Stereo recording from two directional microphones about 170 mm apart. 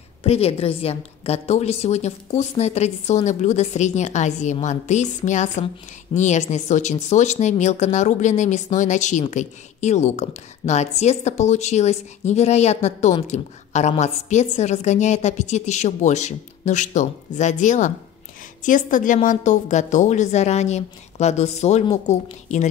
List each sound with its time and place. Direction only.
0.2 s a woman's voice: 35° left (ahead or behind)